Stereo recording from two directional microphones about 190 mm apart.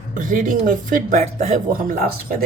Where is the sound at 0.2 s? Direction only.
45° right (ahead or behind).